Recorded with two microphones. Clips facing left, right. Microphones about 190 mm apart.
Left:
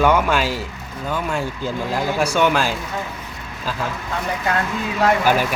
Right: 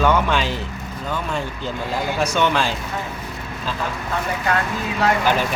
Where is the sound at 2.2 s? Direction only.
10° left (ahead or behind).